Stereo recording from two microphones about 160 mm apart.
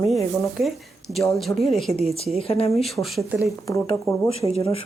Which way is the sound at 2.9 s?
Centre (ahead or behind).